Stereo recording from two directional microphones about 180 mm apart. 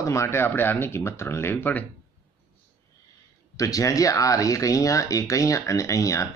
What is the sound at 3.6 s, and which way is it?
Speech, 20° left (ahead or behind).